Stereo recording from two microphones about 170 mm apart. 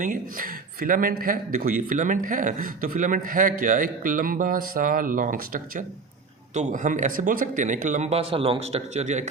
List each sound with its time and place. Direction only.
0.0 s a man's voice: 50° right (ahead or behind)